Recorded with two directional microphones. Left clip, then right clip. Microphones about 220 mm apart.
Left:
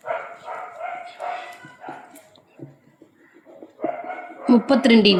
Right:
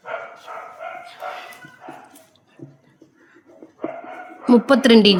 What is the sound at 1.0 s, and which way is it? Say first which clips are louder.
Dog: left 2 dB; 55° right (ahead or behind).